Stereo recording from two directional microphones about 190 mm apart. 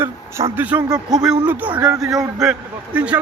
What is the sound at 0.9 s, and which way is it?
Speech, 20° right (ahead or behind).